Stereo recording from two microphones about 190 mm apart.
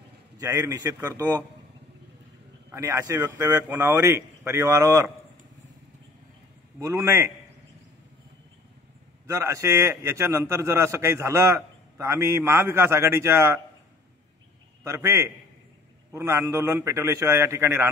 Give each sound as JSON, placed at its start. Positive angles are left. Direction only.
{"t": 0.4, "sound": "a man's voice", "side_deg": -15}
{"t": 2.7, "sound": "a man's voice", "side_deg": -15}
{"t": 6.8, "sound": "a man's voice", "side_deg": -15}
{"t": 9.3, "sound": "a man's voice", "side_deg": -15}
{"t": 14.8, "sound": "a man's voice", "side_deg": -15}